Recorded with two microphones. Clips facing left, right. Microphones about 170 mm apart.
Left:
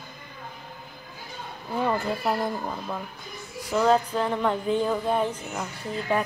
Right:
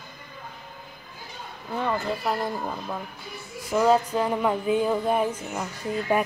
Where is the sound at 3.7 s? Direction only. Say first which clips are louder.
Right 1 dB; 10° right (ahead or behind).